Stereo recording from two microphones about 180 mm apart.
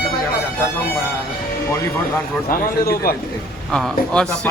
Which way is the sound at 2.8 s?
60° left (ahead or behind).